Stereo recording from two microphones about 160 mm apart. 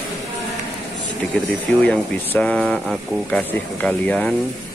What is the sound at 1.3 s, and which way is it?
Speech, 10° left (ahead or behind).